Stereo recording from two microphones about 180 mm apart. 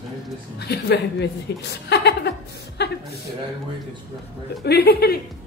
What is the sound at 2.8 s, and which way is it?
Chuckle, 70° left (ahead or behind).